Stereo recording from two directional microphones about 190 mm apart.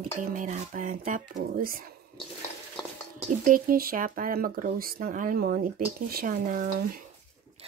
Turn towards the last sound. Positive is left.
turn(degrees=-45)  # may be behind; listen again after turning